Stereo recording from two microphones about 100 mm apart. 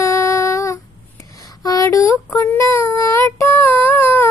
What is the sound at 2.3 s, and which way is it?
Child singing, 15° left (ahead or behind).